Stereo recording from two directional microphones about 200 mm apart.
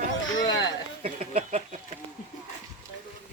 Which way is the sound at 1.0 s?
30° right (ahead or behind).